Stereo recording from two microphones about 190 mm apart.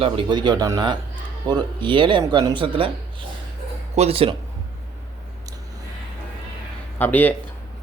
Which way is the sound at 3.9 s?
35° right (ahead or behind).